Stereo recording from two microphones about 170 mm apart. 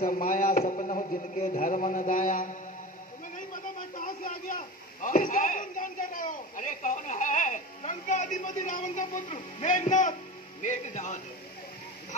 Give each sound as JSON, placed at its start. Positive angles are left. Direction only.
{"t": 0.0, "sound": "a man's voice", "side_deg": 50}
{"t": 3.9, "sound": "a man's voice", "side_deg": 55}